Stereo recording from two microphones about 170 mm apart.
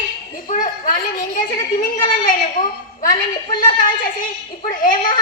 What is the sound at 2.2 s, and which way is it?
A woman's voice, 50° left (ahead or behind).